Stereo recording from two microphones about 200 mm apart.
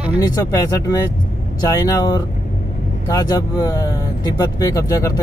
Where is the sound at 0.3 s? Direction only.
20° left (ahead or behind).